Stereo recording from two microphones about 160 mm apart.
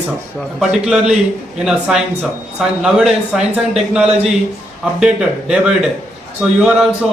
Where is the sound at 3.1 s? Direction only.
5° right (ahead or behind).